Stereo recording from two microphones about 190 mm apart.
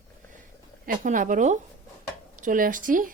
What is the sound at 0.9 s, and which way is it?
Speech, 45° right (ahead or behind).